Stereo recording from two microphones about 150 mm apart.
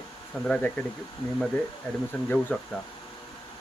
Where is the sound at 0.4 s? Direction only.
5° left (ahead or behind).